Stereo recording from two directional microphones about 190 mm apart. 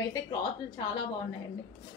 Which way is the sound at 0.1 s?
20° left (ahead or behind).